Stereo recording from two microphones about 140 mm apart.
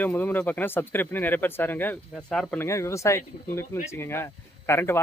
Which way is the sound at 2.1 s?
Centre (ahead or behind).